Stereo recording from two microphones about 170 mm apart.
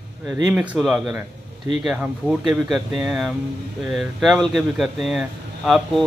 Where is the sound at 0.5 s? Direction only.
5° right (ahead or behind).